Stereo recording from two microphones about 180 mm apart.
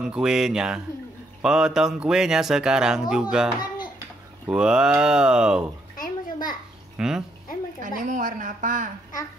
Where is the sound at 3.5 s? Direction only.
25° left (ahead or behind).